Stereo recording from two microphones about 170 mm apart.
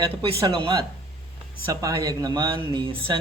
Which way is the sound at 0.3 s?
30° right (ahead or behind).